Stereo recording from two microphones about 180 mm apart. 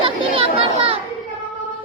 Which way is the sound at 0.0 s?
30° right (ahead or behind).